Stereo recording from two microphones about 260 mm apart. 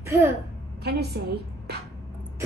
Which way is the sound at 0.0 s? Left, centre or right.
Centre.